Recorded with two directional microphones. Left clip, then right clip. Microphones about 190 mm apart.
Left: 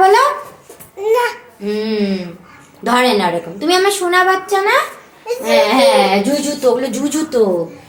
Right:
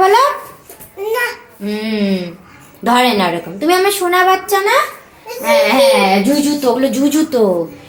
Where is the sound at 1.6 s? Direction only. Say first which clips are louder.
Left 1 dB; 30° right (ahead or behind); by 4.7 s 10° right (ahead or behind).